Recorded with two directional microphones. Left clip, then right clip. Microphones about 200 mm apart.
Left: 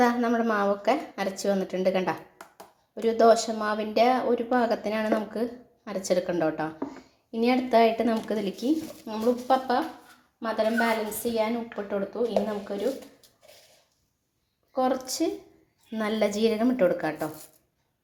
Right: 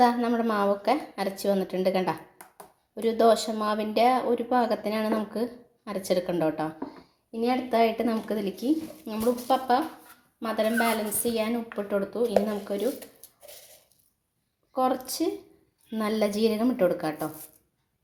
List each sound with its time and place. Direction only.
0.0 s a woman's voice: 5° right (ahead or behind)
14.7 s a woman's voice: 10° right (ahead or behind)